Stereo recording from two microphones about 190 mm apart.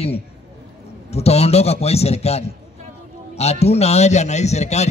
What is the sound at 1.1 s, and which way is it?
A man's voice, 35° left (ahead or behind).